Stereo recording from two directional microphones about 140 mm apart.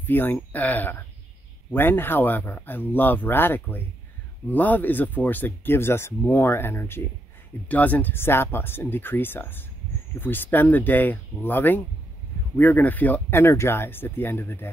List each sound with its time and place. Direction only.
0.0 s speech: 15° left (ahead or behind)